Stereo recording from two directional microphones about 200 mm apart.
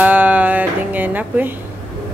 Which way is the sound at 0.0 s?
10° right (ahead or behind).